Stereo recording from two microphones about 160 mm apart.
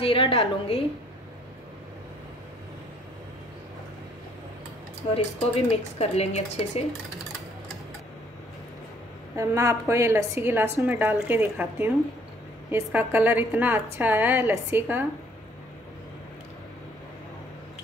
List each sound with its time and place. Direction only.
0.0 s a woman's voice: 35° left (ahead or behind)
5.1 s a woman's voice: 40° left (ahead or behind)
9.4 s a woman's voice: 20° right (ahead or behind)